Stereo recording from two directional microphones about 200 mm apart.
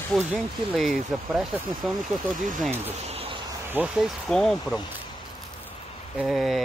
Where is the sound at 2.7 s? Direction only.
30° right (ahead or behind).